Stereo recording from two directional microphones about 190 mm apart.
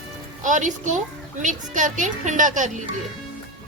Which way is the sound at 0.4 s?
40° right (ahead or behind).